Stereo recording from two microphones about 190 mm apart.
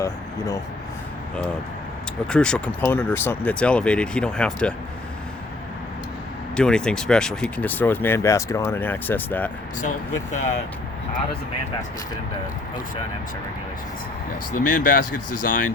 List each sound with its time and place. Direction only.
0.0 s speech: 15° left (ahead or behind)
2.2 s speech: 5° left (ahead or behind)
6.6 s speech: 5° left (ahead or behind)
14.5 s speech: 45° left (ahead or behind)